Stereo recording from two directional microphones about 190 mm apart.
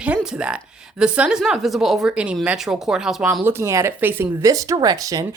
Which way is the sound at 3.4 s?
15° right (ahead or behind).